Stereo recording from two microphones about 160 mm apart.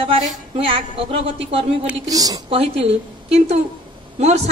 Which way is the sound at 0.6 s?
35° right (ahead or behind).